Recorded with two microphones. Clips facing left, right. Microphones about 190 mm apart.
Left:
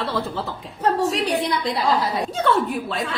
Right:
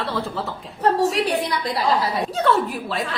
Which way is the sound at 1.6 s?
Centre (ahead or behind).